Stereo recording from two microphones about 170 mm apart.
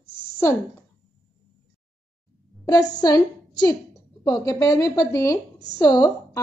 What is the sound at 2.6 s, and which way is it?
A woman's voice, 25° left (ahead or behind).